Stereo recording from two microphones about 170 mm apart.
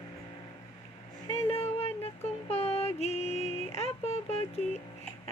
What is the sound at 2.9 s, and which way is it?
Music, 40° left (ahead or behind).